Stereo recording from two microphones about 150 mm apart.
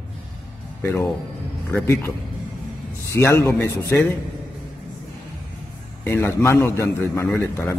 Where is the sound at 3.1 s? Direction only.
20° left (ahead or behind).